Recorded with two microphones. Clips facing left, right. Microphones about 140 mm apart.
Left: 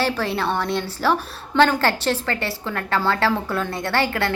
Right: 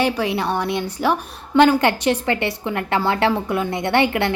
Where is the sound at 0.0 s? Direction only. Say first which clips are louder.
Right 2 dB; 15° right (ahead or behind).